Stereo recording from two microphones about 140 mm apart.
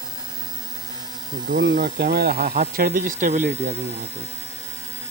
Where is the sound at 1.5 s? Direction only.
75° right (ahead or behind).